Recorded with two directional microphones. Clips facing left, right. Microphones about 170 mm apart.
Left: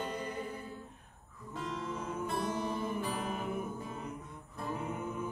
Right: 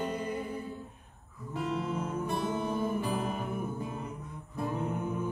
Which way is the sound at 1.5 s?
10° right (ahead or behind).